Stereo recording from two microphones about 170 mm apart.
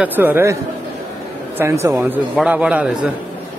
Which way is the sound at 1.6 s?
15° right (ahead or behind).